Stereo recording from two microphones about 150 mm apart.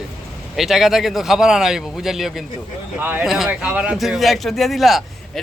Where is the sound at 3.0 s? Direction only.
10° right (ahead or behind).